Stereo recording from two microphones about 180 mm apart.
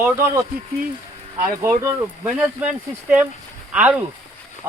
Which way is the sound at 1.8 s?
10° right (ahead or behind).